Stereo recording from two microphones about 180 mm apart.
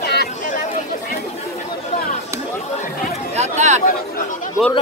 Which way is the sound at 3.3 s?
40° right (ahead or behind).